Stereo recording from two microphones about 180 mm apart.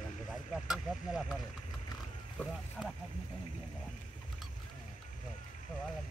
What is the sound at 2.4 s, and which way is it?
Speech, centre (ahead or behind).